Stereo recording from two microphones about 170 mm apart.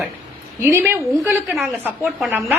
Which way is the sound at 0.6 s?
15° right (ahead or behind).